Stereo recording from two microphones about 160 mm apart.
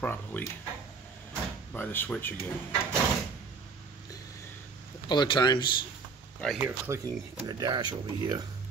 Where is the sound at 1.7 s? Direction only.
10° left (ahead or behind).